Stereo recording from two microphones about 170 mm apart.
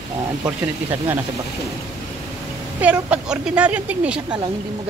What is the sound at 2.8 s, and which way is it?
A man's voice, 10° right (ahead or behind).